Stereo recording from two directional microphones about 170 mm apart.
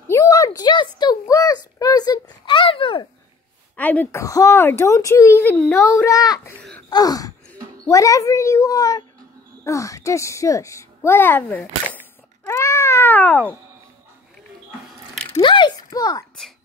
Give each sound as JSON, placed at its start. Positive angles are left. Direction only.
{"t": 0.1, "sound": "a sound", "side_deg": 20}
{"t": 3.7, "sound": "a woman's voice", "side_deg": 10}
{"t": 6.9, "sound": "gasp", "side_deg": 20}
{"t": 7.9, "sound": "a woman's voice", "side_deg": 20}
{"t": 12.4, "sound": "cat", "side_deg": 15}
{"t": 15.4, "sound": "a sound", "side_deg": 30}